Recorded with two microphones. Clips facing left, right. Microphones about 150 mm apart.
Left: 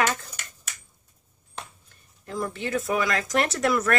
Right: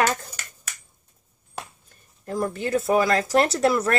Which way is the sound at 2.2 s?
40° right (ahead or behind).